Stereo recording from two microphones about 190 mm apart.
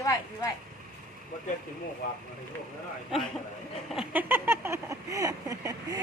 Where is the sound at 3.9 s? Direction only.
5° right (ahead or behind).